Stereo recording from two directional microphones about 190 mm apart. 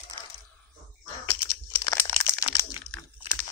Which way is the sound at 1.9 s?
10° left (ahead or behind).